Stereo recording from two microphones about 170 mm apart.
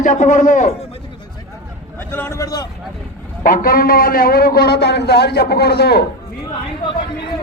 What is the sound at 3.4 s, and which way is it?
A man's voice, 55° left (ahead or behind).